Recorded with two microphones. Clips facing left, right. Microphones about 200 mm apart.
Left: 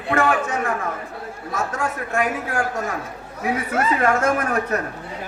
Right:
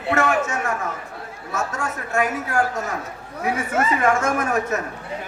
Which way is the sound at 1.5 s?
45° right (ahead or behind).